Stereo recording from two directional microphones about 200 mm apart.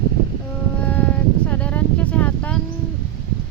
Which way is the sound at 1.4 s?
10° left (ahead or behind).